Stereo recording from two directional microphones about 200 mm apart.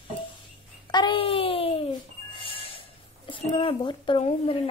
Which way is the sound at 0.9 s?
25° left (ahead or behind).